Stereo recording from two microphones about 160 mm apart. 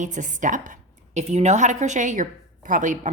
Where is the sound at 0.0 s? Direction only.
50° right (ahead or behind).